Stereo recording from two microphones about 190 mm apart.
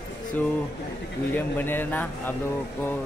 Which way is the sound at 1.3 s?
10° left (ahead or behind).